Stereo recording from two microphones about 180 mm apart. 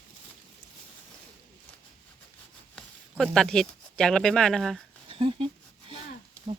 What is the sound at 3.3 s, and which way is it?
Speech, 5° left (ahead or behind).